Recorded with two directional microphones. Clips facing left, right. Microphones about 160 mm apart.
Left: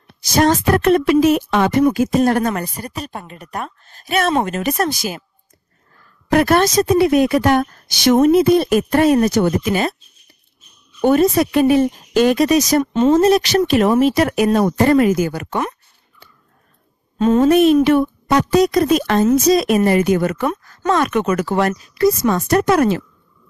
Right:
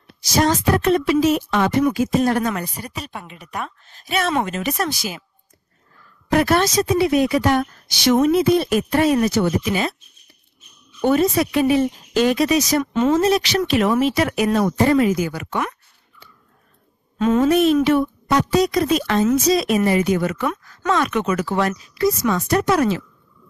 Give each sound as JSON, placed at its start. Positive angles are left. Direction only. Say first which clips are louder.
{"t": 0.2, "sound": "speech", "louder": "left 3 dB", "side_deg": 55}
{"t": 2.0, "sound": "a woman's voice", "louder": "left 3 dB", "side_deg": 45}
{"t": 6.3, "sound": "a woman's voice", "louder": "left 3 dB", "side_deg": 50}
{"t": 11.0, "sound": "a woman's voice", "louder": "left 3 dB", "side_deg": 45}
{"t": 12.9, "sound": "a woman's voice", "louder": "left 4 dB", "side_deg": 30}
{"t": 13.2, "sound": "a woman's voice", "louder": "left 5 dB", "side_deg": 45}
{"t": 14.8, "sound": "a woman's voice", "louder": "left 3 dB", "side_deg": 55}
{"t": 17.2, "sound": "speech", "louder": "left 3 dB", "side_deg": 35}
{"t": 17.5, "sound": "a woman's voice", "louder": "left 5 dB", "side_deg": 55}